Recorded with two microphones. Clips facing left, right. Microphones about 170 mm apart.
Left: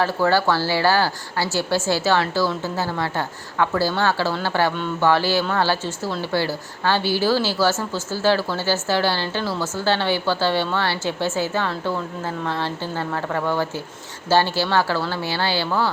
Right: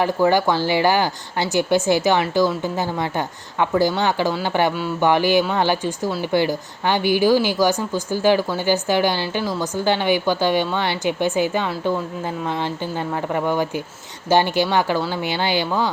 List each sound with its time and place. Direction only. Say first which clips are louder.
0.0 s speech: right 2 dB; 15° right (ahead or behind)